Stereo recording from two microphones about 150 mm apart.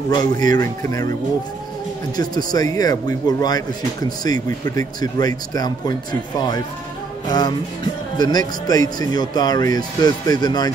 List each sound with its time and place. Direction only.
0.1 s speech: 25° left (ahead or behind)
2.1 s speech: 25° left (ahead or behind)
7.2 s speech: 25° left (ahead or behind)